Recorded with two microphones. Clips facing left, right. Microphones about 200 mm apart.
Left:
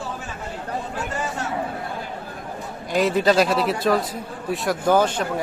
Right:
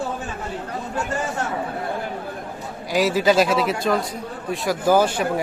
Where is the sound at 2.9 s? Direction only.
5° right (ahead or behind).